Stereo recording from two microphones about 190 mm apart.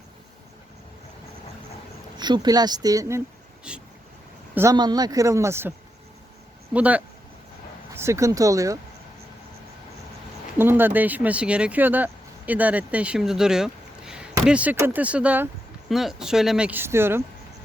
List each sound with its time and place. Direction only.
2.1 s speech: 25° right (ahead or behind)
6.7 s speech: 5° right (ahead or behind)
10.6 s speech: 10° right (ahead or behind)